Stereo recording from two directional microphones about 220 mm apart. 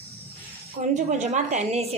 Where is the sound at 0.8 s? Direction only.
30° right (ahead or behind).